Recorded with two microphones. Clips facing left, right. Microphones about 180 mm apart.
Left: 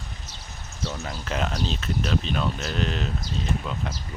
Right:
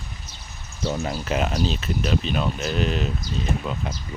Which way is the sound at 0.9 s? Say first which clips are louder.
Right 7 dB; 35° right (ahead or behind).